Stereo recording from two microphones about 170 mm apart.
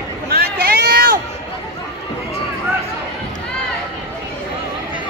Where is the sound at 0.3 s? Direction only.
65° right (ahead or behind).